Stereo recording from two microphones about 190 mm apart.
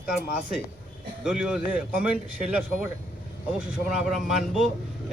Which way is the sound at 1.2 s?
5° right (ahead or behind).